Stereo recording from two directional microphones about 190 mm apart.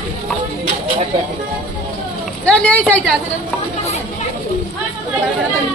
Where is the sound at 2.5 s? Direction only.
5° left (ahead or behind).